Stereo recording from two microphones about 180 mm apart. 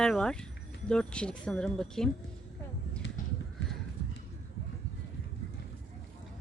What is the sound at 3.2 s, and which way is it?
Clip-clop, 45° left (ahead or behind).